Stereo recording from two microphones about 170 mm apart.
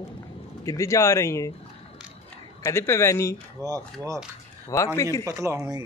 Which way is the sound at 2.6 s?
15° left (ahead or behind).